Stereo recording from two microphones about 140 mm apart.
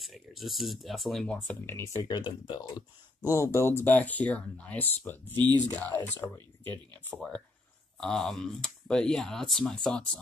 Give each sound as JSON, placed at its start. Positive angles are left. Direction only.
{"t": 0.0, "sound": "speech", "side_deg": 0}
{"t": 1.8, "sound": "speech", "side_deg": 20}
{"t": 3.3, "sound": "speech", "side_deg": 20}
{"t": 7.2, "sound": "speech", "side_deg": 5}